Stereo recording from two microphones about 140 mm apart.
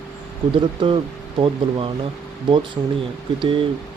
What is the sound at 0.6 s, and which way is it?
Speech, 35° right (ahead or behind).